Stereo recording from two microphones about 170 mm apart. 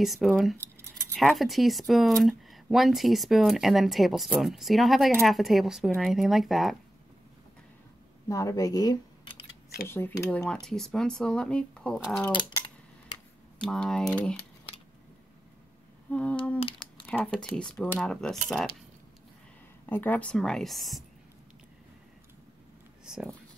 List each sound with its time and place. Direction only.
0.0 s speech: centre (ahead or behind)
8.3 s speech: 20° left (ahead or behind); by 12.3 s centre (ahead or behind)
12.3 s speech: 25° left (ahead or behind)
13.6 s speech: 5° left (ahead or behind)
16.1 s speech: 5° left (ahead or behind)
16.5 s a sound: 35° left (ahead or behind)
17.0 s speech: 10° left (ahead or behind)
19.9 s speech: 10° left (ahead or behind)
23.0 s speech: 5° right (ahead or behind)